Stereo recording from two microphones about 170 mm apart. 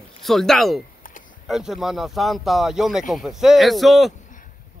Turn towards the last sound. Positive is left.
turn(degrees=0)  # may be behind; listen again after turning